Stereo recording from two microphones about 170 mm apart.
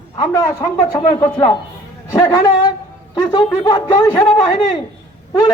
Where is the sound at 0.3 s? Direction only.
25° left (ahead or behind).